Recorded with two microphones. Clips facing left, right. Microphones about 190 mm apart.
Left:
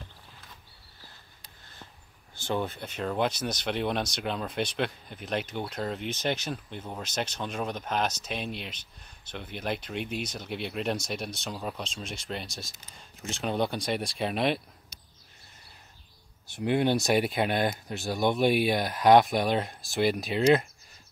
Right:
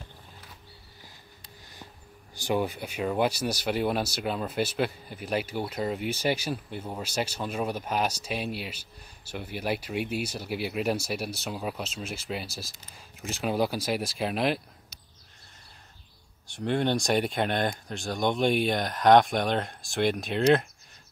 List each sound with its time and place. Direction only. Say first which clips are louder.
2.3 s speech: right 3 dB; 15° right (ahead or behind)
16.5 s speech: left 1 dB; 10° left (ahead or behind)